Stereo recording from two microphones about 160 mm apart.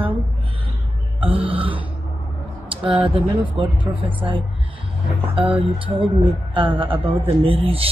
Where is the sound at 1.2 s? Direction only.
35° right (ahead or behind).